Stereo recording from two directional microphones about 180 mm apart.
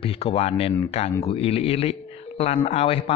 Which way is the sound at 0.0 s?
35° left (ahead or behind).